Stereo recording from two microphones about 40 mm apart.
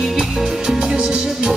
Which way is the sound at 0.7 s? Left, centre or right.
Centre.